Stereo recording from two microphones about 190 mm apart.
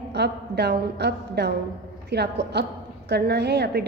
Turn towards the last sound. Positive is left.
turn(degrees=-60)  # may be behind; listen again after turning